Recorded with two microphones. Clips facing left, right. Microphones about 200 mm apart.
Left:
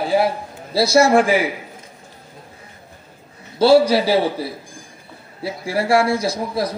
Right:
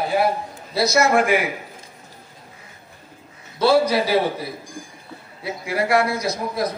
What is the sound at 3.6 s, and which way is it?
Speech, 30° left (ahead or behind).